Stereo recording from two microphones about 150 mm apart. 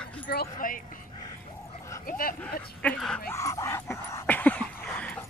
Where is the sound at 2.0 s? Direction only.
70° left (ahead or behind).